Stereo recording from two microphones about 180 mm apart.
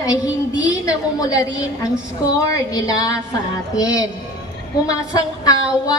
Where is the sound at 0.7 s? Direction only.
20° left (ahead or behind).